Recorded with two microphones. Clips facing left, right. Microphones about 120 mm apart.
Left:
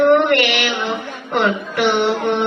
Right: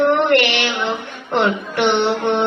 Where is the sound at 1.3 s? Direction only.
25° right (ahead or behind).